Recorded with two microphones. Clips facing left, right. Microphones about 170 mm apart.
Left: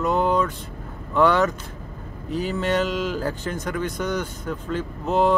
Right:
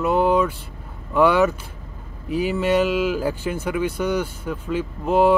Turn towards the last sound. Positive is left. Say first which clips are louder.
# right 3 dB
turn(degrees=-10)  # may be behind; listen again after turning